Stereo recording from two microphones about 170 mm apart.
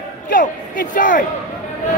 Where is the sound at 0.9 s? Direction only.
50° left (ahead or behind).